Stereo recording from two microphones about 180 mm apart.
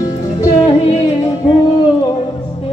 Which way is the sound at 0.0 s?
20° left (ahead or behind).